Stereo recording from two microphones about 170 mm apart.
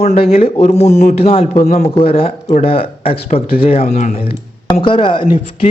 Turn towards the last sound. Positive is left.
turn(degrees=30)  # may be behind; listen again after turning